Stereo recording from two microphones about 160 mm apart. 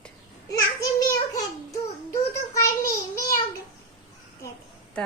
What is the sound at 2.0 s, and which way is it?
Child singing, 20° left (ahead or behind).